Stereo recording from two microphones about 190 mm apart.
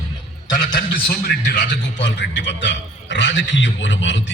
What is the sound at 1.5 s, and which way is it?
A man's voice, 60° left (ahead or behind).